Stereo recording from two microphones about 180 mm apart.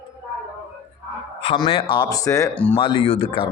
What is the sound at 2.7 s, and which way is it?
Speech, 30° left (ahead or behind).